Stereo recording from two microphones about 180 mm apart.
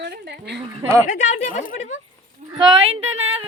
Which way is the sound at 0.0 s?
70° right (ahead or behind).